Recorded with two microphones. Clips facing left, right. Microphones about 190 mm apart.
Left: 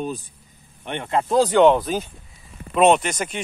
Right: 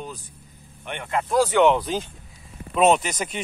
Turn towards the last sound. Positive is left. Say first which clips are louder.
# left 2 dB
turn(degrees=0)  # may be behind; listen again after turning